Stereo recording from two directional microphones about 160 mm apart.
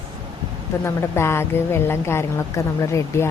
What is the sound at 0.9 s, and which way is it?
Speech, 15° left (ahead or behind).